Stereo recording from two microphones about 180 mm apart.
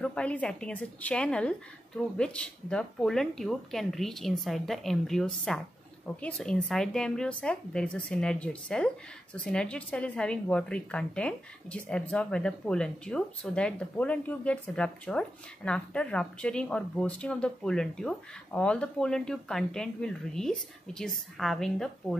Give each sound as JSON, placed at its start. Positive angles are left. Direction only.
{"t": 0.0, "sound": "speech", "side_deg": 5}